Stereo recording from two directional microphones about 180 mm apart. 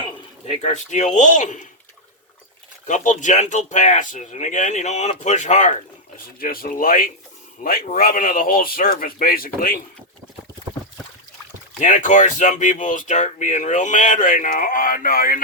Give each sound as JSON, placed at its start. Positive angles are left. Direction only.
{"t": 0.4, "sound": "speech", "side_deg": 35}
{"t": 2.8, "sound": "speech", "side_deg": 45}
{"t": 6.4, "sound": "speech", "side_deg": 55}
{"t": 11.8, "sound": "speech", "side_deg": 45}